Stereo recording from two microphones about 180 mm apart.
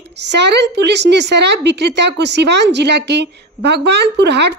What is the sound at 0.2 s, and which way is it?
A woman's voice, 70° right (ahead or behind).